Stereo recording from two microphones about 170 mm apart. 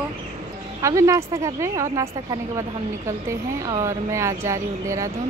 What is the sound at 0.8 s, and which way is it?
Speech, 20° right (ahead or behind).